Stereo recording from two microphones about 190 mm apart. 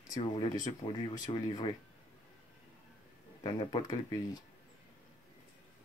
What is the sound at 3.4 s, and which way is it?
Speech, 25° left (ahead or behind).